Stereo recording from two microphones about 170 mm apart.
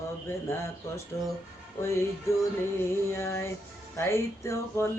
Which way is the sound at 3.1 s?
15° left (ahead or behind).